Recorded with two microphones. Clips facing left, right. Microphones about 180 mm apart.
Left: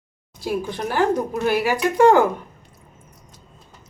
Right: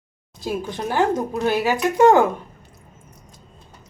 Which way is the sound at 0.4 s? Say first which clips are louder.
Left 1 dB; 20° right (ahead or behind).